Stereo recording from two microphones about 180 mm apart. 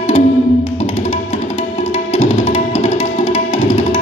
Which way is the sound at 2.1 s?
35° left (ahead or behind).